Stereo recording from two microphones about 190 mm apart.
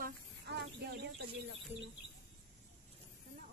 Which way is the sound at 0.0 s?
60° right (ahead or behind).